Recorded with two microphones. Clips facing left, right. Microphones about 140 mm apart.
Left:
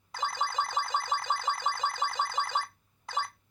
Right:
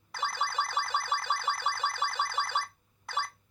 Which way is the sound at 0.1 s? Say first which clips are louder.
Left 1 dB; 15° left (ahead or behind).